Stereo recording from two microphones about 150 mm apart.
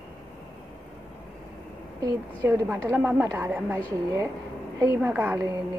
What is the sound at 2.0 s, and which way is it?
A woman's voice, 25° right (ahead or behind).